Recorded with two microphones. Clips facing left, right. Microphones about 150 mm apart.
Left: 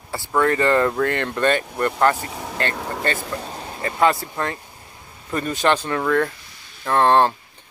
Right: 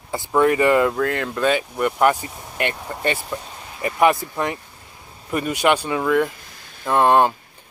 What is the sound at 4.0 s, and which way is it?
Speech, 15° right (ahead or behind).